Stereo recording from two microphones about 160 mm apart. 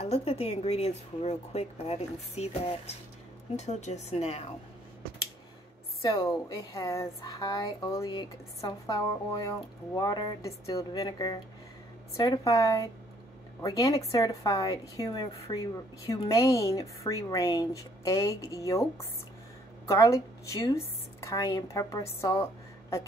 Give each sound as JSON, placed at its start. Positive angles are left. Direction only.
{"t": 0.0, "sound": "a woman's voice", "side_deg": 40}
{"t": 6.0, "sound": "speech", "side_deg": 25}
{"t": 19.9, "sound": "a woman's voice", "side_deg": 20}